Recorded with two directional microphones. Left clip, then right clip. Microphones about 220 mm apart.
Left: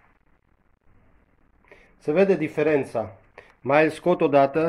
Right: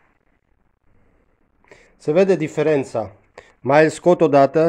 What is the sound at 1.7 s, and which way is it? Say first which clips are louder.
Speech: right 5 dB; 60° right (ahead or behind).